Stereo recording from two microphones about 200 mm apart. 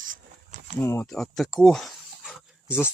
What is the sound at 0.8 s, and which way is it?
Speech, 10° left (ahead or behind).